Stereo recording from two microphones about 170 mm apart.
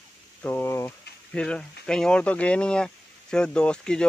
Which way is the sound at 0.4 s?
15° left (ahead or behind).